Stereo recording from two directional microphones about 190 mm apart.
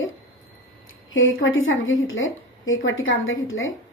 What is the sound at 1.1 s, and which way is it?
A woman's voice, 90° left.